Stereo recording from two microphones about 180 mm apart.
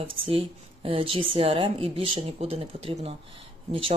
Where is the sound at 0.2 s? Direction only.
30° right (ahead or behind).